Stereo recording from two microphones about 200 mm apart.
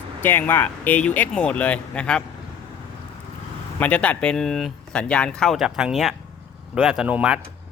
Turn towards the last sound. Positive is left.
turn(degrees=-5)  # may be behind; listen again after turning